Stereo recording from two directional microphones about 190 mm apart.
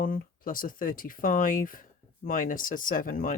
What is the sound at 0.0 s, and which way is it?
Speech, 45° left (ahead or behind).